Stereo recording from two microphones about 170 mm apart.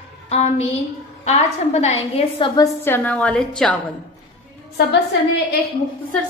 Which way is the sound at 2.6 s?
15° left (ahead or behind).